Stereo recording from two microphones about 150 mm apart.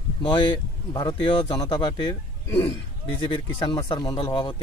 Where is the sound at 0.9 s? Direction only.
30° left (ahead or behind).